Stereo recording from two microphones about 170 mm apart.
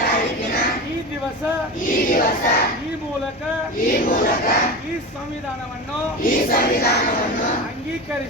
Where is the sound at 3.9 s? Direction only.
55° left (ahead or behind).